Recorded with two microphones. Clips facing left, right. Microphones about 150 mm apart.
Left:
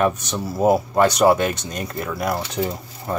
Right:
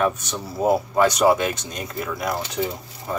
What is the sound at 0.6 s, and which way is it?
Speech, 5° left (ahead or behind).